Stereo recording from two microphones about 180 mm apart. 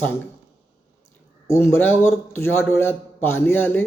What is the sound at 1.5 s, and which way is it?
Speech, 15° left (ahead or behind).